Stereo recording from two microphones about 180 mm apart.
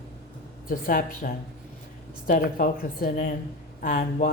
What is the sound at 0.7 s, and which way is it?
Speech, 50° left (ahead or behind).